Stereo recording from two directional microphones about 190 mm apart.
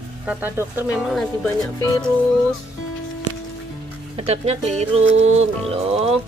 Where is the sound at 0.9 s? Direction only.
Centre (ahead or behind).